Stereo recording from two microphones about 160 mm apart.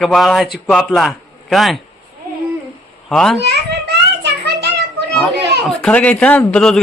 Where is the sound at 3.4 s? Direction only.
90° right.